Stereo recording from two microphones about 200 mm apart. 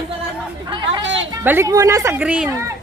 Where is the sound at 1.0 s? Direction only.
70° right (ahead or behind).